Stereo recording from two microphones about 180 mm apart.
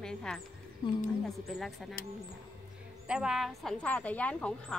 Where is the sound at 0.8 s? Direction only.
25° left (ahead or behind).